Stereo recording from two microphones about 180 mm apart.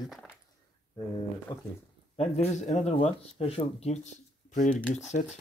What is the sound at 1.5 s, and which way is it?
Speech, 25° left (ahead or behind).